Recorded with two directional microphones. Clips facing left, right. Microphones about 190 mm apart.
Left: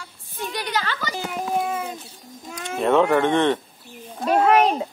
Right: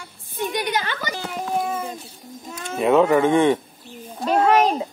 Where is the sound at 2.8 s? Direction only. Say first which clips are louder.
Right 2 dB; 5° right (ahead or behind).